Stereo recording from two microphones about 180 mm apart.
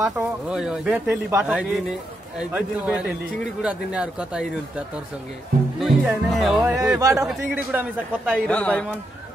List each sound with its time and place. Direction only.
0.0 s speech: 5° right (ahead or behind)
7.0 s a man's voice: 15° right (ahead or behind)
7.2 s a man's voice: 5° right (ahead or behind)
8.5 s speech: 5° left (ahead or behind)